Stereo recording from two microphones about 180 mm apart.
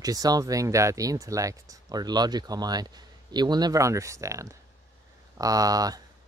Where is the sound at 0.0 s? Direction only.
20° right (ahead or behind).